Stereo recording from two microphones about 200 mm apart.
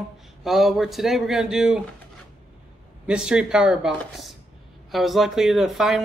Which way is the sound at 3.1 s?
5° right (ahead or behind).